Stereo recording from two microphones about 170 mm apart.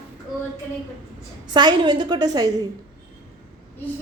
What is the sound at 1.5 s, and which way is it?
Speech, 25° right (ahead or behind).